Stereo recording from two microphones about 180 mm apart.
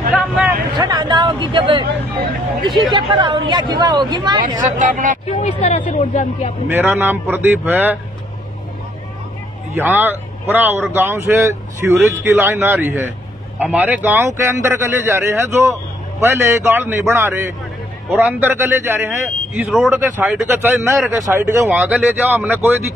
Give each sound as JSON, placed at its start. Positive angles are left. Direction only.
{"t": 0.1, "sound": "a sound", "side_deg": -10}
{"t": 0.7, "sound": "a sound", "side_deg": -25}
{"t": 2.6, "sound": "speech", "side_deg": -25}
{"t": 4.6, "sound": "speech", "side_deg": -45}
{"t": 5.4, "sound": "speech", "side_deg": 35}
{"t": 6.7, "sound": "speech", "side_deg": -15}
{"t": 9.8, "sound": "speech", "side_deg": -10}